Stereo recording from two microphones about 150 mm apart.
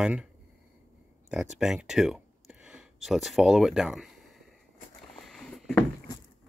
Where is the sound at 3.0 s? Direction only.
Centre (ahead or behind).